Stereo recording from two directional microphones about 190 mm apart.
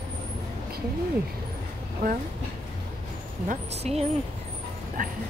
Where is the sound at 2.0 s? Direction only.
50° right (ahead or behind).